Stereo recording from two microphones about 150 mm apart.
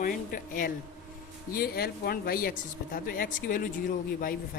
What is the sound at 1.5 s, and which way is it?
A woman's voice, 90° left.